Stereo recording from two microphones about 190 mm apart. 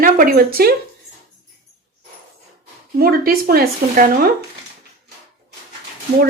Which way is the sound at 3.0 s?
50° right (ahead or behind).